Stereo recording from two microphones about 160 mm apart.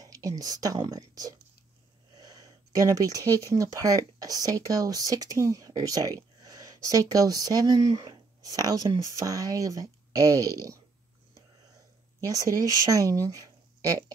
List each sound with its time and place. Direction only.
0.0 s speech: 20° right (ahead or behind)
12.3 s speech: 20° right (ahead or behind)